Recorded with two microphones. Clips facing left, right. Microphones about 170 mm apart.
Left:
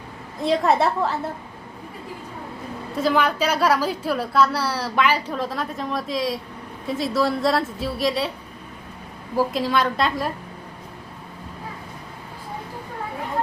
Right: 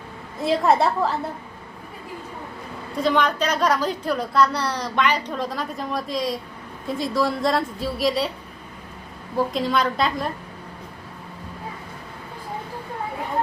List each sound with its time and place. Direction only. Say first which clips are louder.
0.4 s a woman's voice: even; centre (ahead or behind)
2.9 s a woman's voice: even; 5° left (ahead or behind)
9.3 s a woman's voice: left 1 dB; 5° left (ahead or behind)